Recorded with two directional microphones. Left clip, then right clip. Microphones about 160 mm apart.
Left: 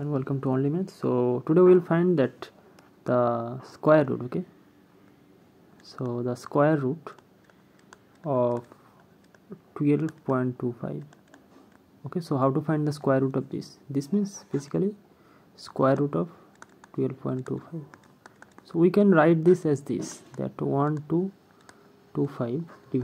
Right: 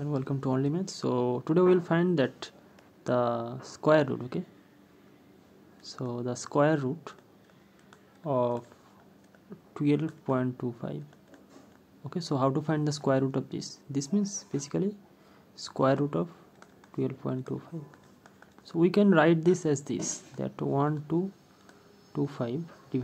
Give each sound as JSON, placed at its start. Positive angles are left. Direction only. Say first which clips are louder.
{"t": 0.0, "sound": "speech", "louder": "left 3 dB", "side_deg": 15}
{"t": 5.9, "sound": "speech", "louder": "left 4 dB", "side_deg": 25}
{"t": 7.9, "sound": "typing", "louder": "left 2 dB", "side_deg": 20}
{"t": 9.8, "sound": "speech", "louder": "left 3 dB", "side_deg": 15}